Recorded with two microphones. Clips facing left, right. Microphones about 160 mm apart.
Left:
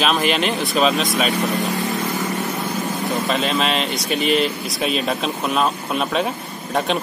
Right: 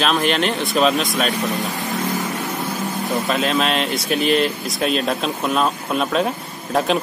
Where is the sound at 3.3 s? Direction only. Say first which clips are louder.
Right 2 dB; centre (ahead or behind).